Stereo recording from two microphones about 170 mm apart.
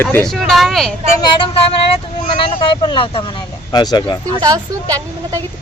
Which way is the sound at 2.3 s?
30° left (ahead or behind).